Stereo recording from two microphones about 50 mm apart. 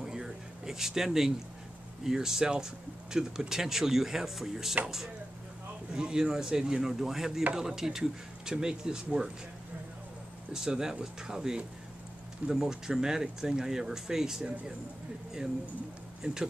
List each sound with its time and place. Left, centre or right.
0.0 s a sound: centre
2.0 s speech: centre
10.5 s speech: centre
16.2 s speech: centre